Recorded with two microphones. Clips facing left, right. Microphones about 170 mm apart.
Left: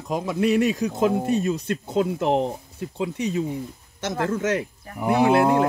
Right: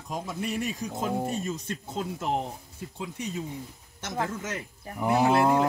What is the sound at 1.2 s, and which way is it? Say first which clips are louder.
Speech: left 9 dB; 70° left (ahead or behind).